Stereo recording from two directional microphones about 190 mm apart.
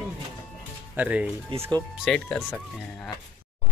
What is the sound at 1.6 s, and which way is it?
Speech, 20° right (ahead or behind).